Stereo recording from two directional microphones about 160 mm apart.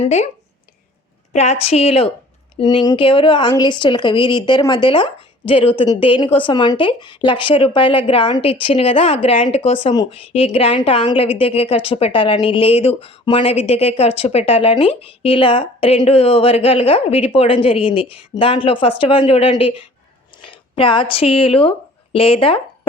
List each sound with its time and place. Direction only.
0.0 s speech: 45° left (ahead or behind)
1.3 s a woman's voice: 40° left (ahead or behind)